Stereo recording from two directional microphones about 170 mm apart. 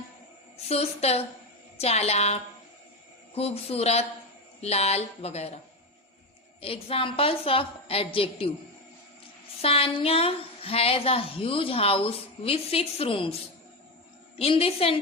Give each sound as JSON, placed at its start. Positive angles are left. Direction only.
{"t": 0.5, "sound": "a woman's voice", "side_deg": 35}
{"t": 6.6, "sound": "a woman's voice", "side_deg": 35}
{"t": 9.6, "sound": "a woman's voice", "side_deg": 35}
{"t": 14.3, "sound": "a woman's voice", "side_deg": 35}